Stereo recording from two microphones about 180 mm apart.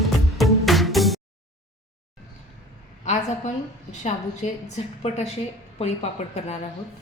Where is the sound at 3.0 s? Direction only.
40° left (ahead or behind).